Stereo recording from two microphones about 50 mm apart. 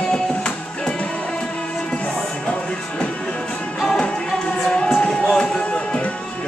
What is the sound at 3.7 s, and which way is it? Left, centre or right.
Music, centre.